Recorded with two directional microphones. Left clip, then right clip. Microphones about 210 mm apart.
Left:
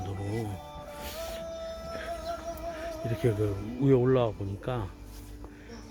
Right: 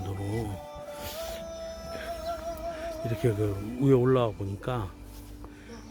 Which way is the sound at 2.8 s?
15° right (ahead or behind).